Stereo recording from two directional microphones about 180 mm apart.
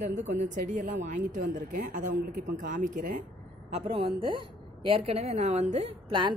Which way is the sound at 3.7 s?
30° right (ahead or behind).